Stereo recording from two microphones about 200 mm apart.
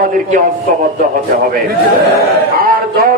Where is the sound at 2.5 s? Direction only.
45° right (ahead or behind).